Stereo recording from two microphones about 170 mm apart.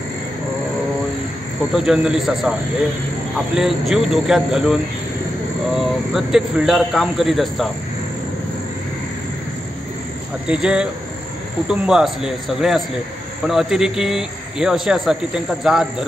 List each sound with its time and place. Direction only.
1.7 s speech: 5° right (ahead or behind)
3.5 s speech: centre (ahead or behind)
5.8 s speech: 5° right (ahead or behind)
10.4 s speech: 5° right (ahead or behind)